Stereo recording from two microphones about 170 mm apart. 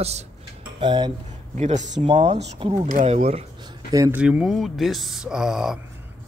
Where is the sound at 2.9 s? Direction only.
50° right (ahead or behind).